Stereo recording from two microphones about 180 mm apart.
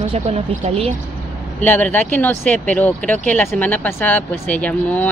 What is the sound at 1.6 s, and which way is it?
Speech, 10° left (ahead or behind).